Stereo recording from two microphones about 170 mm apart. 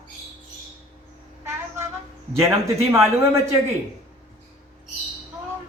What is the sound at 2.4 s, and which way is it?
Speech, 15° right (ahead or behind).